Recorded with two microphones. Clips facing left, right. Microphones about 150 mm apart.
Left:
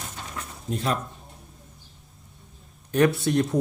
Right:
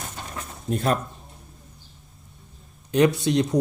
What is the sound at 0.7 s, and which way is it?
Speech, 50° right (ahead or behind).